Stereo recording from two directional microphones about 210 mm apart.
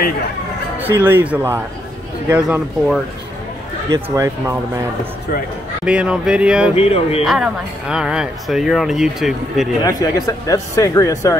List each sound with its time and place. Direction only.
0.7 s speech: 10° right (ahead or behind)
3.9 s speech: 15° right (ahead or behind)
5.9 s speech: 5° right (ahead or behind)
6.7 s speech: 30° left (ahead or behind)
7.2 s speech: 5° right (ahead or behind)
9.8 s speech: 15° left (ahead or behind)